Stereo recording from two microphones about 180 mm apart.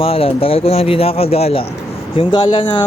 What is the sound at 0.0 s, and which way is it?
Speech, 30° left (ahead or behind).